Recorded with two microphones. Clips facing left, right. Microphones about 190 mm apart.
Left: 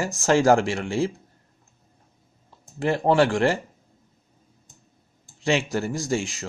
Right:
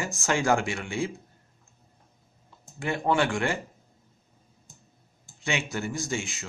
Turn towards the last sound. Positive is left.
turn(degrees=40)  # may be behind; listen again after turning